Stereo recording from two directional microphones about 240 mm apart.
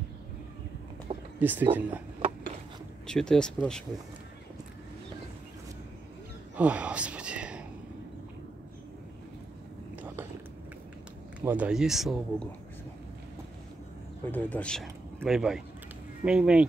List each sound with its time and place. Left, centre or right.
1.1 s a sound: right
1.4 s speech: centre
3.1 s speech: centre
6.5 s a sound: centre
11.4 s speech: centre
14.2 s speech: centre